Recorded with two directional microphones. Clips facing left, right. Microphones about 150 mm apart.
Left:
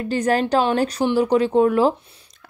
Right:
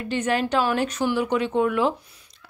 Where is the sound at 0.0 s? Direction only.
40° left (ahead or behind).